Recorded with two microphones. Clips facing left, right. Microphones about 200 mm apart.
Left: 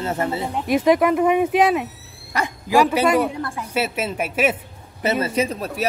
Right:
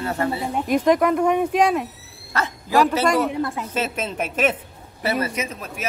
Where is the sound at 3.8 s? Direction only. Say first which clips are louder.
Left 3 dB; 10° left (ahead or behind).